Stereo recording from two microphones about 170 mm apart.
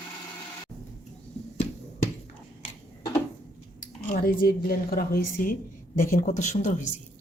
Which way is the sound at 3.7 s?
55° left (ahead or behind).